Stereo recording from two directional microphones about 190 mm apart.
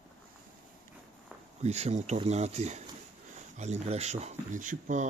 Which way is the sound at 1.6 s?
35° right (ahead or behind).